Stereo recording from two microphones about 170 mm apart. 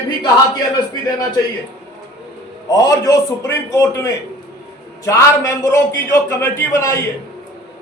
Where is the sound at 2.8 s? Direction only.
20° left (ahead or behind).